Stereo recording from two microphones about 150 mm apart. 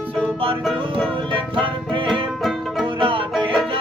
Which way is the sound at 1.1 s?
35° right (ahead or behind).